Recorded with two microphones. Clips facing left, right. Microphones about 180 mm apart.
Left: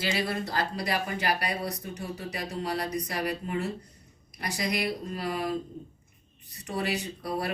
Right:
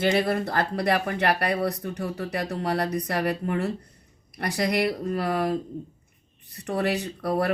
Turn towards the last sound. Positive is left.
turn(degrees=-55)  # may be behind; listen again after turning